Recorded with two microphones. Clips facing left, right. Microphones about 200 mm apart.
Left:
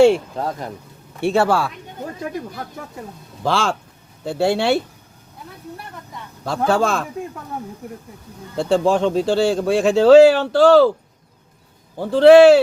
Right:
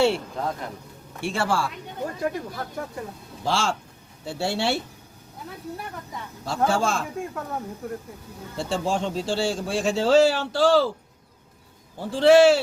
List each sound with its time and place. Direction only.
1.2 s speech: 65° left (ahead or behind)
3.4 s speech: 55° left (ahead or behind)
6.4 s speech: 60° left (ahead or behind)
8.5 s speech: 60° left (ahead or behind)
11.9 s speech: 60° left (ahead or behind)